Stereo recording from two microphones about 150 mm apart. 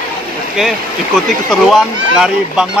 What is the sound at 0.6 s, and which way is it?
Speech, centre (ahead or behind).